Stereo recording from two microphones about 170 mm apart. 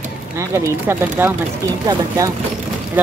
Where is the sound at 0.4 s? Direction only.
15° right (ahead or behind).